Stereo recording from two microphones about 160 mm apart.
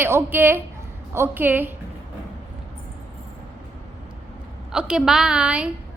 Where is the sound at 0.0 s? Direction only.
15° right (ahead or behind).